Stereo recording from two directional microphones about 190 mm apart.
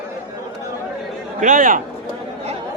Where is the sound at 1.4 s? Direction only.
45° right (ahead or behind).